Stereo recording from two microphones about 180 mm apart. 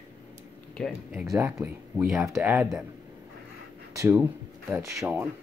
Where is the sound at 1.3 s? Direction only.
15° right (ahead or behind).